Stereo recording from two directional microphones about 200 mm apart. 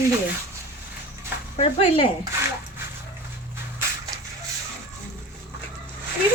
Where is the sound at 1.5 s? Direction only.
30° left (ahead or behind).